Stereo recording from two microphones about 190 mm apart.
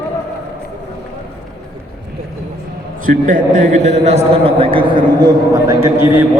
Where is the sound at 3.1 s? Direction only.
45° right (ahead or behind).